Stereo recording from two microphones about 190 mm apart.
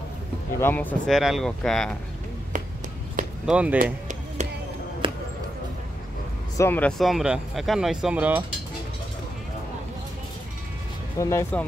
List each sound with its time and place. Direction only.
0.6 s speech: 10° left (ahead or behind)
2.5 s a sound: 40° right (ahead or behind)
3.4 s speech: 5° right (ahead or behind)
3.7 s music: 45° right (ahead or behind)
5.0 s basketball bounce: 25° right (ahead or behind)
6.5 s speech: 10° left (ahead or behind); by 8.5 s 10° right (ahead or behind)
11.1 s speech: 15° left (ahead or behind)